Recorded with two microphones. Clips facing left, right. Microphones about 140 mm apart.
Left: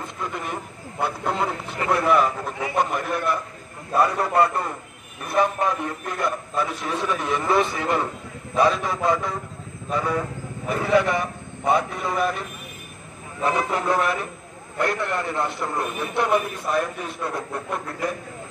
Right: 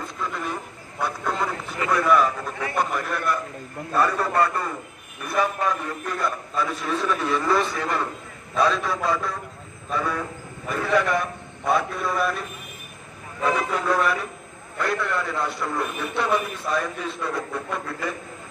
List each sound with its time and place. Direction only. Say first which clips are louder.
0.9 s a man's voice: left 2 dB; 25° left (ahead or behind)